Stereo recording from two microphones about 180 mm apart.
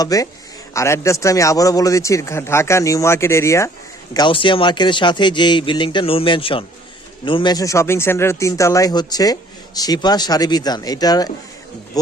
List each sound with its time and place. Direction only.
0.0 s a man's voice: 20° left (ahead or behind)